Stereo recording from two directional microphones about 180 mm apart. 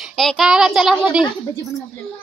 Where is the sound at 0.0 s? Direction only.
Centre (ahead or behind).